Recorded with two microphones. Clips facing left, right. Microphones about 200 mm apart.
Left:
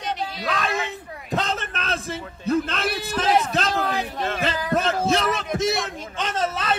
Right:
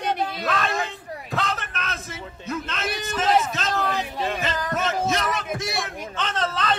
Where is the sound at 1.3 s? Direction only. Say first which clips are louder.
Left 3 dB; 25° left (ahead or behind).